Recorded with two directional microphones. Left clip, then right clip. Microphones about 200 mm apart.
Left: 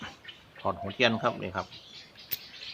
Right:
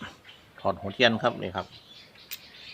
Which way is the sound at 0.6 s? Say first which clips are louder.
Right 3 dB; 25° right (ahead or behind).